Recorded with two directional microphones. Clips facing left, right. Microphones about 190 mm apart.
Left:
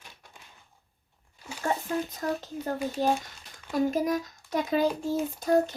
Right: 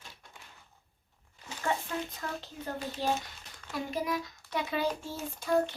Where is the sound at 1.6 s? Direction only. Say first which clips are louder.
Left 4 dB; 40° left (ahead or behind).